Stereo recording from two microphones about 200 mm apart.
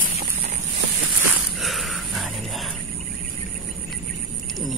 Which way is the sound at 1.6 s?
Centre (ahead or behind).